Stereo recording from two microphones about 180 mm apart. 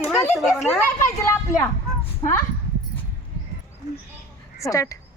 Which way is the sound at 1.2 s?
15° left (ahead or behind).